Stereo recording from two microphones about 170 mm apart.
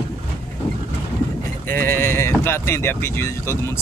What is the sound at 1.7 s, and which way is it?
Speech, 15° left (ahead or behind).